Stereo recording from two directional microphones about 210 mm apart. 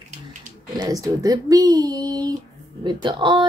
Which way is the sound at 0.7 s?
15° right (ahead or behind).